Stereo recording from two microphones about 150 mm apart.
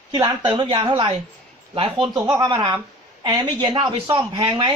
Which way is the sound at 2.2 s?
20° right (ahead or behind).